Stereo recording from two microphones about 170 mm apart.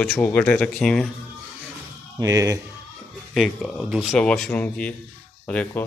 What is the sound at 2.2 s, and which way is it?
Speech, 20° right (ahead or behind).